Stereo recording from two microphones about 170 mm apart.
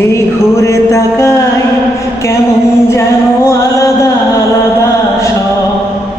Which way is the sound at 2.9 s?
15° left (ahead or behind).